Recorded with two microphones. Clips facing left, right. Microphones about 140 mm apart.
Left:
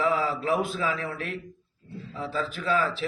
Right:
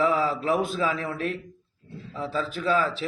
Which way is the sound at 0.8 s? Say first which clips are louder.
Right 3 dB; 25° right (ahead or behind).